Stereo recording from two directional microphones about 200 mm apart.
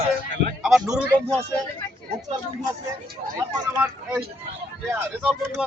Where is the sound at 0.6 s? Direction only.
5° right (ahead or behind).